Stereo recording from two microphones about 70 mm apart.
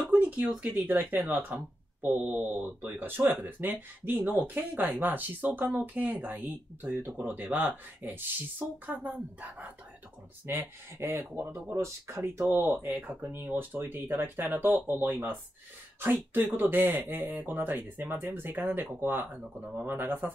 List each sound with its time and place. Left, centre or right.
0.1 s speech: centre
7.5 s speech: right
8.9 s speech: centre
10.4 s speech: right
11.7 s speech: right